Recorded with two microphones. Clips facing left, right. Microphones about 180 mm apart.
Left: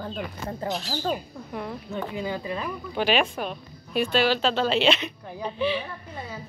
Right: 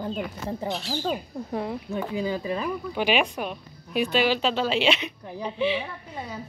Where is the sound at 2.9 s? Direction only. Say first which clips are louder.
Left 1 dB; 15° right (ahead or behind).